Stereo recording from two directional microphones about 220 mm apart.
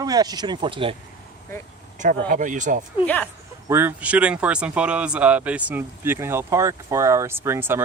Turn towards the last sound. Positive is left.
turn(degrees=-10)  # may be behind; listen again after turning